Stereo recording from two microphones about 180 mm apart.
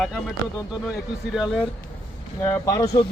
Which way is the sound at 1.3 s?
Centre (ahead or behind).